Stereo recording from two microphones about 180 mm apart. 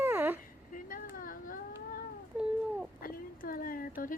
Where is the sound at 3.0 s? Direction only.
55° left (ahead or behind).